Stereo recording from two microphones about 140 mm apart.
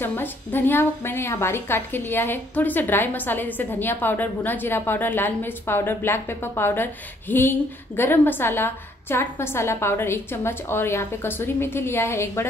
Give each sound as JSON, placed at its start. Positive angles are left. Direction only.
{"t": 0.0, "sound": "a woman's voice", "side_deg": 15}